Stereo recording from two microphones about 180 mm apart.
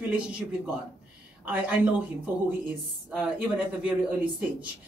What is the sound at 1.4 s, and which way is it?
Speech, 5° right (ahead or behind).